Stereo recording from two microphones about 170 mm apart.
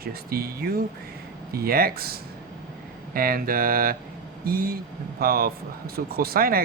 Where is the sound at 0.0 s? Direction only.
65° right (ahead or behind).